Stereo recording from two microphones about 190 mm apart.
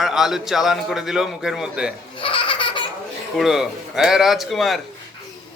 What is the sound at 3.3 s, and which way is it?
Speech, centre (ahead or behind).